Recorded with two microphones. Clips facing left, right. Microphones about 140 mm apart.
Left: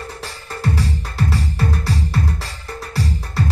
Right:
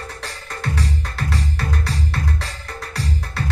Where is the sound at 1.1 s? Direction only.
Centre (ahead or behind).